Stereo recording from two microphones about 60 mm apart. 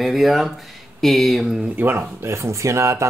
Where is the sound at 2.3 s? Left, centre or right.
Right.